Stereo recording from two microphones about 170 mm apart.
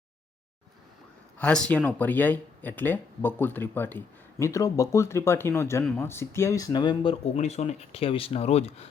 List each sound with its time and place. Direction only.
1.4 s speech: 5° left (ahead or behind); by 8.9 s 35° left (ahead or behind)